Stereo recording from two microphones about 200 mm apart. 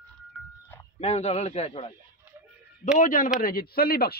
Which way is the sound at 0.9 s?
35° left (ahead or behind).